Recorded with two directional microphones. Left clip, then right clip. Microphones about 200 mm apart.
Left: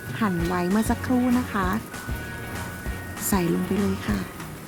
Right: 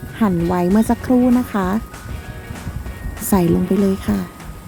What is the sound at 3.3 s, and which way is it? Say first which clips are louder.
Speech: right 8 dB; 15° right (ahead or behind).